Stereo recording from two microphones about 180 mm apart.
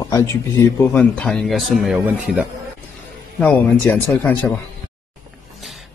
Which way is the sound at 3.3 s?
5° left (ahead or behind).